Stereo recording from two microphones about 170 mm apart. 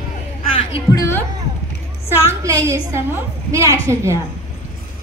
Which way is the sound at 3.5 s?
15° right (ahead or behind).